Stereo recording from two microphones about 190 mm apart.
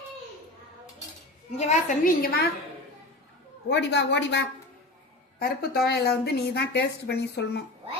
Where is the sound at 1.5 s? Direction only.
40° left (ahead or behind).